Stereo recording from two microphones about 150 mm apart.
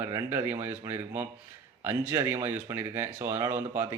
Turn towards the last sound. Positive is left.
turn(degrees=-15)  # may be behind; listen again after turning